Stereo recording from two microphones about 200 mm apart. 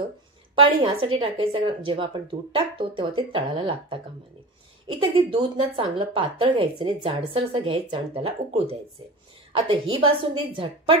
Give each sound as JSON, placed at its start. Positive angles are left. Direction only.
{"t": 0.8, "sound": "a woman's voice", "side_deg": -25}